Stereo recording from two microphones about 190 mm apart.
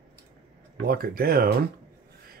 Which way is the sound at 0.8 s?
50° right (ahead or behind).